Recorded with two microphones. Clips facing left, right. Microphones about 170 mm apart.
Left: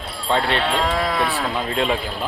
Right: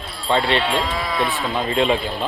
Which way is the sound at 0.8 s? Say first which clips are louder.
Left 2 dB; 60° left (ahead or behind).